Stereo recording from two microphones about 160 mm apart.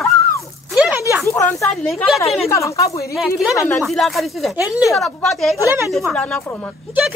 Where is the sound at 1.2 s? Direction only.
20° left (ahead or behind).